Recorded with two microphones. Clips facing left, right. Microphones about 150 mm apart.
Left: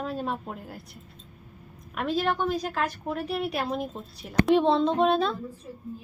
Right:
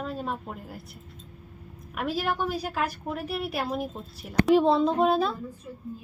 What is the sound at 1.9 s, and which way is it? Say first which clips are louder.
A woman's voice: left 2 dB; 5° right (ahead or behind).